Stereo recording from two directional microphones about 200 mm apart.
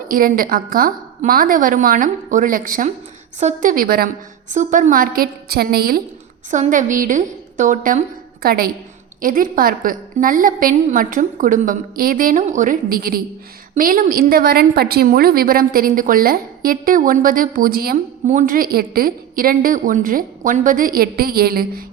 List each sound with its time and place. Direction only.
0.1 s a woman's voice: 45° right (ahead or behind)
6.5 s a woman's voice: 40° right (ahead or behind)